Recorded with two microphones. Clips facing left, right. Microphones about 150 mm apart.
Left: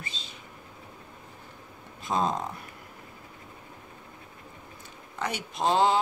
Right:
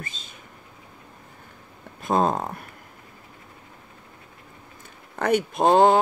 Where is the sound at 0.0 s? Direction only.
50° right (ahead or behind).